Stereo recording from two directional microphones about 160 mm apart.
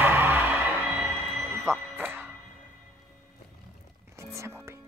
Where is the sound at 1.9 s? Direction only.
15° right (ahead or behind).